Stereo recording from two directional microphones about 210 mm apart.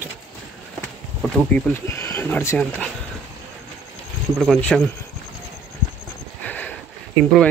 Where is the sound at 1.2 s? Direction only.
10° left (ahead or behind).